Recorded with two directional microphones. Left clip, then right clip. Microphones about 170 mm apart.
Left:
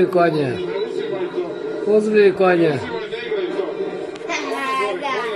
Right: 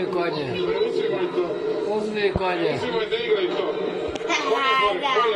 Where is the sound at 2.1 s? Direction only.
90° left.